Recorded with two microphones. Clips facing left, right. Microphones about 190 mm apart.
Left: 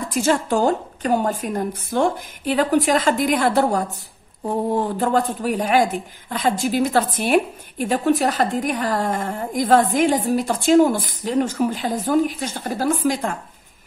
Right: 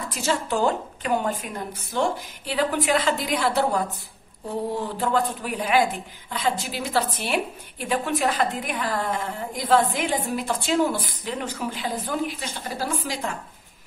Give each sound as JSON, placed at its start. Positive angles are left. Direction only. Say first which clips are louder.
{"t": 0.1, "sound": "speech", "louder": "left 6 dB", "side_deg": 50}